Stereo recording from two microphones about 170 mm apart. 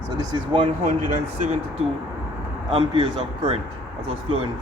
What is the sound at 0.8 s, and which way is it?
Speech, 45° right (ahead or behind).